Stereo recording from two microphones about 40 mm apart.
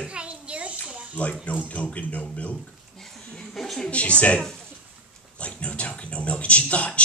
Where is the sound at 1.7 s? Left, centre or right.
Left.